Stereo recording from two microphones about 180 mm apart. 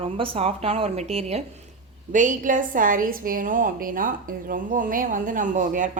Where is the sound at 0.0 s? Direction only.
30° right (ahead or behind).